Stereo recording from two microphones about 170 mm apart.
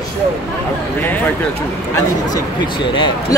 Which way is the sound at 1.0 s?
10° left (ahead or behind).